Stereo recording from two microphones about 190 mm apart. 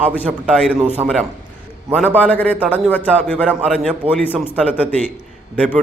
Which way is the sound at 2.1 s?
10° left (ahead or behind).